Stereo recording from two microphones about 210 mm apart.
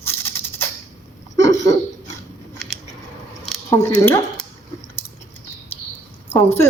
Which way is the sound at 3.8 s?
10° left (ahead or behind).